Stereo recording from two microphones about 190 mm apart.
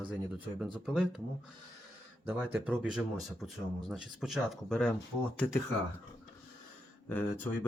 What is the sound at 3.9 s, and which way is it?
Speech, centre (ahead or behind).